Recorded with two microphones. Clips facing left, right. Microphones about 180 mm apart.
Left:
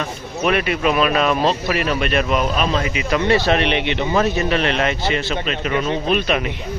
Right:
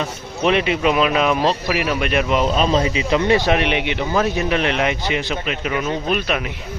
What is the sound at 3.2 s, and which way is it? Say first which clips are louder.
Speech: left 1 dB; 15° right (ahead or behind).